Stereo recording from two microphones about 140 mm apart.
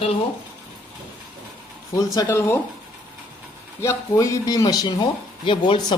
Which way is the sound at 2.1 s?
20° left (ahead or behind).